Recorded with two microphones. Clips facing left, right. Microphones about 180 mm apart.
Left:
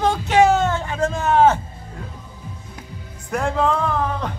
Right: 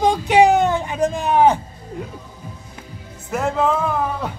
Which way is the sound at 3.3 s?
5° right (ahead or behind).